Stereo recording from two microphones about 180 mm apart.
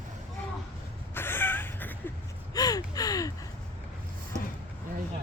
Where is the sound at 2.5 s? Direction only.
20° left (ahead or behind).